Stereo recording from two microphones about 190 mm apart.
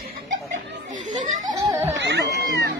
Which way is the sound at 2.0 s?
65° right (ahead or behind).